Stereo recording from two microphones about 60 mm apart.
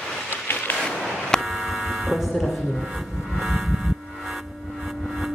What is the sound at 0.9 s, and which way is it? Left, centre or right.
Buzzer, centre.